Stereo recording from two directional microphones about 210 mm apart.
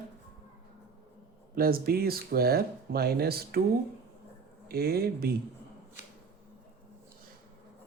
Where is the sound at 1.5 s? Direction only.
45° right (ahead or behind).